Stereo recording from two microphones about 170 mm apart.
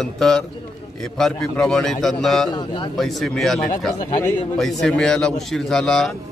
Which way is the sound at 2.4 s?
25° left (ahead or behind).